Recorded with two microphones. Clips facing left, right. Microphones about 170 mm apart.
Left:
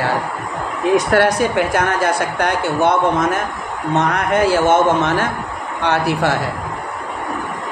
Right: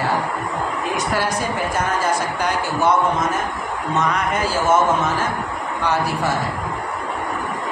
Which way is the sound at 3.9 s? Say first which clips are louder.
Left 4 dB; 60° left (ahead or behind).